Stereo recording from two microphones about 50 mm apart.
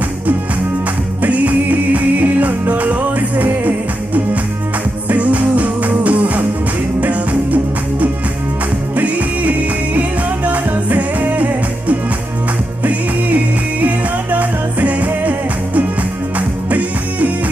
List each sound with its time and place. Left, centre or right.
1.2 s music: right